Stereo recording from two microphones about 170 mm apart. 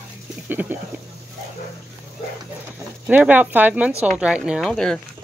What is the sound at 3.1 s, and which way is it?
Speech, 10° right (ahead or behind).